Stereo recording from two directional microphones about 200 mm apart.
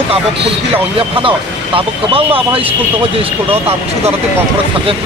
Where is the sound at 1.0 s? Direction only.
25° right (ahead or behind).